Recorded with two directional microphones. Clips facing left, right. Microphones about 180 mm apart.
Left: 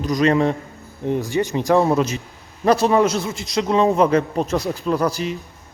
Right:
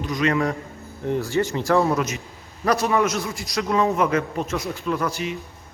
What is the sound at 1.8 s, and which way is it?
A man's voice, 30° left (ahead or behind).